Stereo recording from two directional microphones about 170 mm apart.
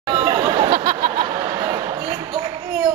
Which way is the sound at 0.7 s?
30° right (ahead or behind).